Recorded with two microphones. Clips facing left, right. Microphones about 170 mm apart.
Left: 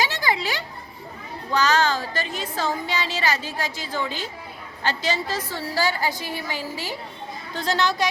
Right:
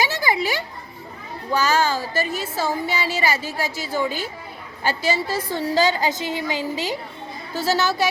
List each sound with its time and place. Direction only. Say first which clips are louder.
0.0 s a sound: right 2 dB; 10° right (ahead or behind)
1.5 s a woman's voice: right 1 dB; 10° right (ahead or behind)
7.5 s a woman's voice: right 2 dB; 5° right (ahead or behind)